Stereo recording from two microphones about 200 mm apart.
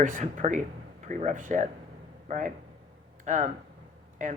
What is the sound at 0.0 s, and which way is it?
A man's voice, 40° right (ahead or behind).